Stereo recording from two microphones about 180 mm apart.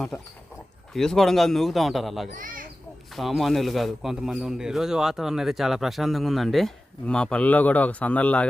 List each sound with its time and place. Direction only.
0.9 s a man's voice: centre (ahead or behind)
2.3 s speech: 50° right (ahead or behind)
3.2 s a man's voice: centre (ahead or behind)